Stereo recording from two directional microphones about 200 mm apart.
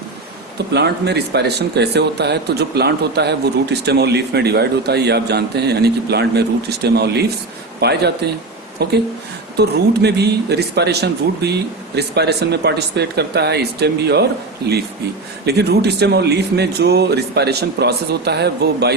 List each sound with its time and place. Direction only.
0.7 s speech: 55° right (ahead or behind)